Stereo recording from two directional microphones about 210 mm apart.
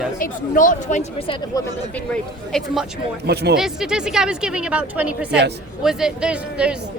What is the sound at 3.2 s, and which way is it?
Speech, 50° right (ahead or behind).